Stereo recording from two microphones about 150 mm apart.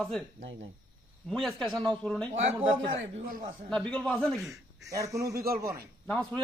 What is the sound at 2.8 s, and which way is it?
Speech, 70° right (ahead or behind).